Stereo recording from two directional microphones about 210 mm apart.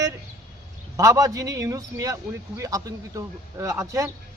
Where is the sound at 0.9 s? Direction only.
15° right (ahead or behind).